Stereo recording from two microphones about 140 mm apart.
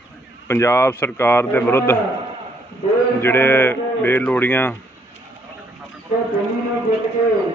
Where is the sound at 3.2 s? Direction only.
15° left (ahead or behind).